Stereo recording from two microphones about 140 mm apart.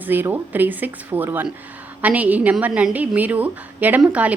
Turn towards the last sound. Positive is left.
turn(degrees=-10)  # may be behind; listen again after turning